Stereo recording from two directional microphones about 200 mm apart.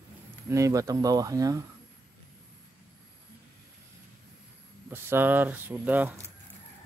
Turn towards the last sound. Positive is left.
turn(degrees=-10)  # may be behind; listen again after turning